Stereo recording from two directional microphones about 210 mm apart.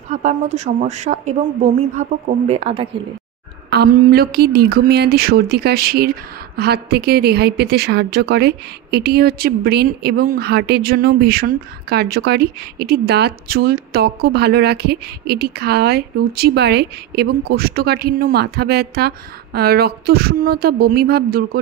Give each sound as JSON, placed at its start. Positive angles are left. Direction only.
{"t": 0.1, "sound": "a woman's voice", "side_deg": -35}
{"t": 3.7, "sound": "speech", "side_deg": -45}